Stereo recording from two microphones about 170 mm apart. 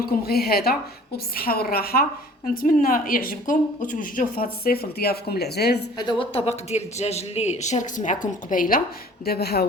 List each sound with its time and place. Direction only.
0.0 s a woman's voice: 60° left (ahead or behind)
6.0 s speech: 30° left (ahead or behind); by 8.8 s 55° left (ahead or behind)
9.2 s speech: 70° left (ahead or behind)